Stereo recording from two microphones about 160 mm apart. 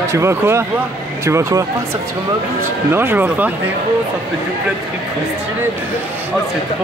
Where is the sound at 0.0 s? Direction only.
15° right (ahead or behind).